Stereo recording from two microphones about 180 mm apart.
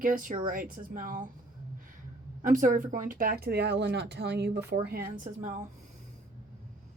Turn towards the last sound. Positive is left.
turn(degrees=-45)  # may be behind; listen again after turning